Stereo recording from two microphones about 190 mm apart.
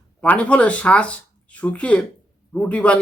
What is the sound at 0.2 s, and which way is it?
Speech, 5° left (ahead or behind).